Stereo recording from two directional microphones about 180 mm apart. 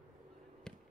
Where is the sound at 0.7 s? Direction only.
5° left (ahead or behind).